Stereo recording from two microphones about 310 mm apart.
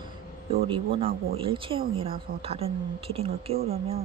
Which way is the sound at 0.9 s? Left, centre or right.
Centre.